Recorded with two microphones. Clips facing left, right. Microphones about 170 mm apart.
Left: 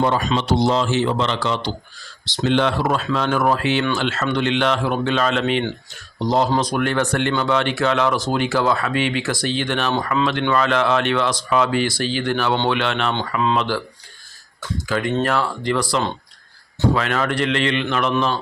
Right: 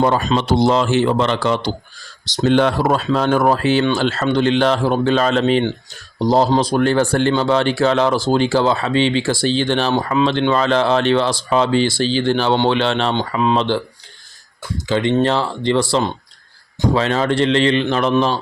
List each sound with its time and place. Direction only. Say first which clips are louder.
0.0 s speech: right 3 dB; 40° right (ahead or behind)
0.4 s speech: right 3 dB; 55° right (ahead or behind); by 9.9 s 30° right (ahead or behind)
9.9 s speech: right 4 dB; 15° right (ahead or behind)
13.1 s speech: right 3 dB; 20° right (ahead or behind)
14.8 s speech: right 5 dB; 25° right (ahead or behind)